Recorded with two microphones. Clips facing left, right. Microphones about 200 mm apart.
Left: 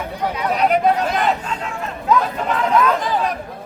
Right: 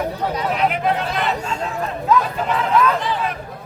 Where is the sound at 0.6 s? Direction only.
40° left (ahead or behind).